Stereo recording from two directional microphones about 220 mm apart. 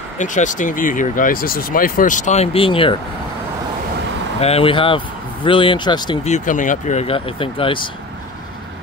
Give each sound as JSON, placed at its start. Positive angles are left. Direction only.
{"t": 0.2, "sound": "speech", "side_deg": 35}
{"t": 4.4, "sound": "speech", "side_deg": 25}
{"t": 6.3, "sound": "speech", "side_deg": 35}